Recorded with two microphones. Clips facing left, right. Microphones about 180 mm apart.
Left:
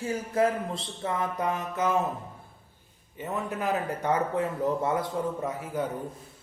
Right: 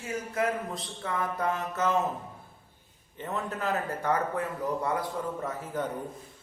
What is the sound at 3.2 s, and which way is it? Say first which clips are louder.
Speech: left 2 dB; 15° left (ahead or behind).